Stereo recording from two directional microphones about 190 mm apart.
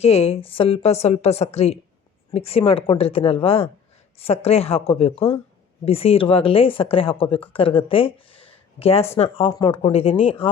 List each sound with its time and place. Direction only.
0.0 s a woman's voice: 35° left (ahead or behind)